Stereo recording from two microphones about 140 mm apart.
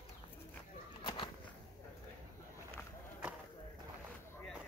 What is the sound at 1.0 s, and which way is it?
Bird, 35° left (ahead or behind).